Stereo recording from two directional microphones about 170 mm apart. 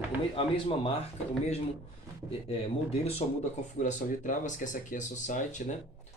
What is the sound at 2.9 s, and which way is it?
Speech, 40° left (ahead or behind).